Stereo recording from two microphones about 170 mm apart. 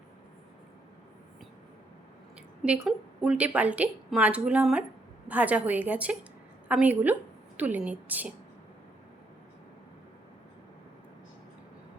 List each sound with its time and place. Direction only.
2.6 s a woman's voice: 5° right (ahead or behind)